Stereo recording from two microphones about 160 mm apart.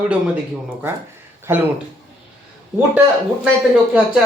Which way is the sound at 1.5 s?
15° right (ahead or behind).